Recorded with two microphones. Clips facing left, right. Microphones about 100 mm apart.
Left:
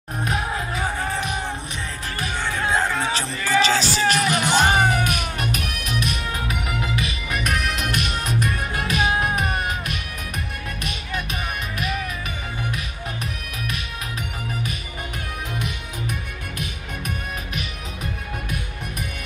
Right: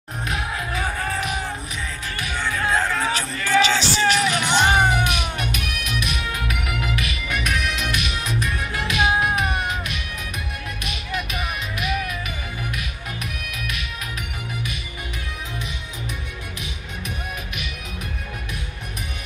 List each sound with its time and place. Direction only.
0.2 s music: 30° left (ahead or behind)
3.3 s music: centre (ahead or behind)
3.6 s music: 35° left (ahead or behind)
4.0 s music: 5° left (ahead or behind)
5.0 s music: 45° left (ahead or behind)